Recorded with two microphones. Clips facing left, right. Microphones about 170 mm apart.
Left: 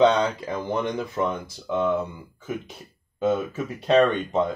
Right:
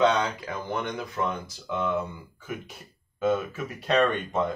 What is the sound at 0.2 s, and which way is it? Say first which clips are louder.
Speech: left 5 dB; 25° left (ahead or behind).